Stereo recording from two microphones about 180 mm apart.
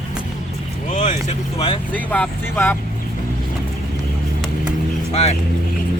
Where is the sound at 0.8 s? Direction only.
40° left (ahead or behind).